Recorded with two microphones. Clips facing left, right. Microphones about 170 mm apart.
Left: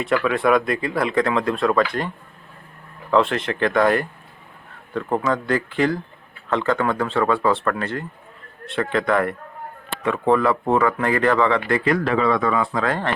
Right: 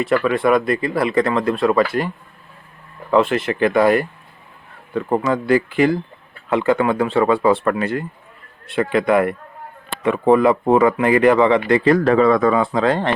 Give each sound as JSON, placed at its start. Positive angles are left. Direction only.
{"t": 0.0, "sound": "speech", "side_deg": 0}
{"t": 11.9, "sound": "speech", "side_deg": -40}
{"t": 12.5, "sound": "speech", "side_deg": -25}